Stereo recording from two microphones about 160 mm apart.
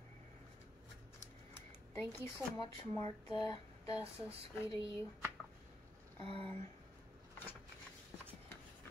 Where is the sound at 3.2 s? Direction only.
25° left (ahead or behind).